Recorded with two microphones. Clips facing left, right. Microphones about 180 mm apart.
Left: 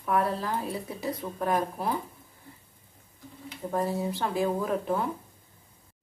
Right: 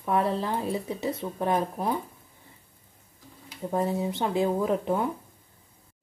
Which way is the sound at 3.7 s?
20° right (ahead or behind).